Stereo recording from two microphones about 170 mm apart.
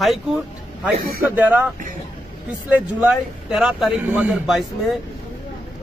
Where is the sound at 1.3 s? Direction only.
10° right (ahead or behind).